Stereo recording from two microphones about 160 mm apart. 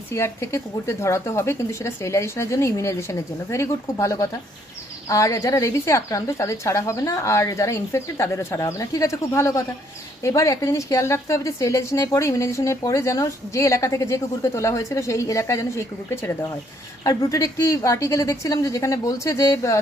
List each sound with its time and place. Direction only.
0.1 s a woman's voice: 15° left (ahead or behind)